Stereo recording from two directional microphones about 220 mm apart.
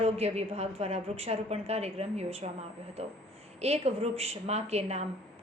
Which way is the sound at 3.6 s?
25° right (ahead or behind).